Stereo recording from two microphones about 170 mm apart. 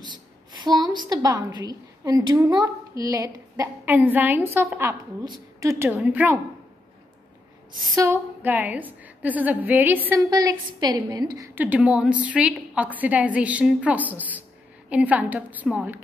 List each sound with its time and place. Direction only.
0.0 s a woman's voice: 25° right (ahead or behind); by 6.3 s 10° right (ahead or behind)
7.8 s a woman's voice: 20° right (ahead or behind)
10.3 s a woman's voice: 25° right (ahead or behind)